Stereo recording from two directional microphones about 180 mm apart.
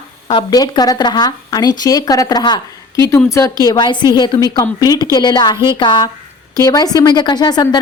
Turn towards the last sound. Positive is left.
turn(degrees=25)  # may be behind; listen again after turning